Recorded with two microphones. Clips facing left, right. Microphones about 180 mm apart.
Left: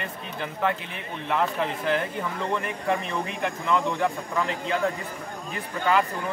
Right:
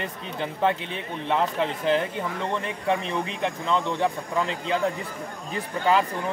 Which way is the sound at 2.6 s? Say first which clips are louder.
Right 1 dB; 25° right (ahead or behind).